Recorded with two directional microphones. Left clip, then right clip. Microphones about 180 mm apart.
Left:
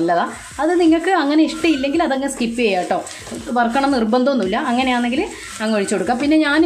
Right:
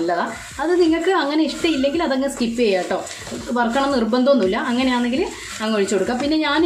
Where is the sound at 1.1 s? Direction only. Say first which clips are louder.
Left 3 dB; 25° left (ahead or behind).